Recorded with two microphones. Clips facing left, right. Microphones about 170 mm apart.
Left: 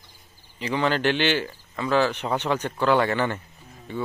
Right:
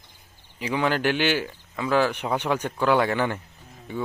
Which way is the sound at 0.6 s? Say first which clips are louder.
Even; 10° right (ahead or behind).